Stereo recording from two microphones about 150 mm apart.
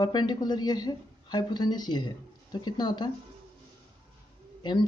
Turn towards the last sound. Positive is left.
turn(degrees=30)  # may be behind; listen again after turning